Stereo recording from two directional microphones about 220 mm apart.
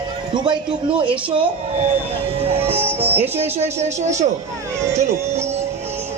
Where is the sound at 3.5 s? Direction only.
30° right (ahead or behind).